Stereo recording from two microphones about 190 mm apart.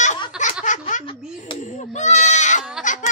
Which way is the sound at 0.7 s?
40° left (ahead or behind).